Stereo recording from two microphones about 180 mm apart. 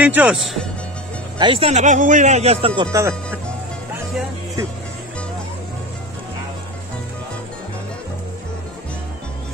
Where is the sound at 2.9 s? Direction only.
15° right (ahead or behind).